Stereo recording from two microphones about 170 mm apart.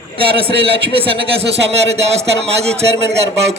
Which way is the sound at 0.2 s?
30° right (ahead or behind).